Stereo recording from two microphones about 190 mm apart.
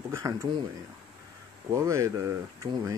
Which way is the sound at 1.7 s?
15° right (ahead or behind).